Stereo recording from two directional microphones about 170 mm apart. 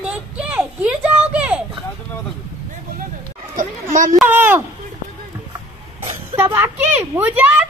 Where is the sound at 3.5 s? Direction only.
50° right (ahead or behind).